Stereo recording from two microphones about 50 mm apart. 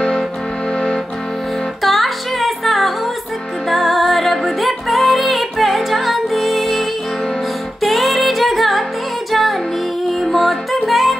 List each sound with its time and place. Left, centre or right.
0.7 s music: centre
1.8 s music: centre